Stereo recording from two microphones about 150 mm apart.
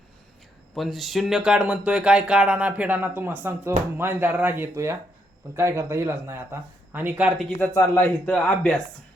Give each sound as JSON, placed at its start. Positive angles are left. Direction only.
{"t": 0.7, "sound": "speech", "side_deg": 0}
{"t": 7.6, "sound": "a man's voice", "side_deg": 15}